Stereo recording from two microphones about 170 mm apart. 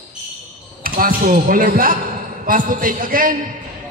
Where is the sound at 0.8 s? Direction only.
60° right (ahead or behind).